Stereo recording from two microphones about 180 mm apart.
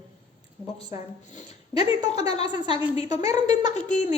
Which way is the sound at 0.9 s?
20° right (ahead or behind).